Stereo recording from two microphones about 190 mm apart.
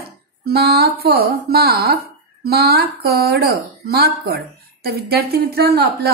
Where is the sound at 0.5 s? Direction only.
55° right (ahead or behind).